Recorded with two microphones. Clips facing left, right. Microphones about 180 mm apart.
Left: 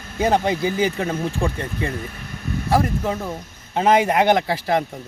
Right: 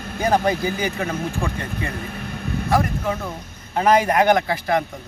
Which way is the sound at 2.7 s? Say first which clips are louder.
Left 1 dB; 25° left (ahead or behind).